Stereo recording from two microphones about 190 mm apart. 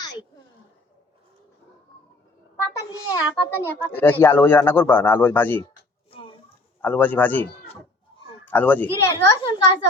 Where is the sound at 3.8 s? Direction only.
10° left (ahead or behind).